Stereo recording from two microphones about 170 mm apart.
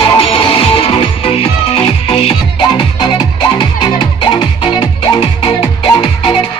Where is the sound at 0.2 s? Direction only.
30° left (ahead or behind).